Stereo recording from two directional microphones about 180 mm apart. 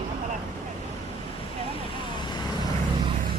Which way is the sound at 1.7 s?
25° left (ahead or behind).